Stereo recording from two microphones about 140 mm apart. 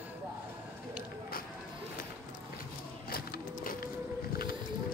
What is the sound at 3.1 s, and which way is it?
Sewing machine, 90° left.